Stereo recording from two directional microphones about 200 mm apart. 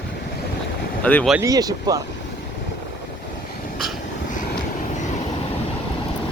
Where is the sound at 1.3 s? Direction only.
15° right (ahead or behind).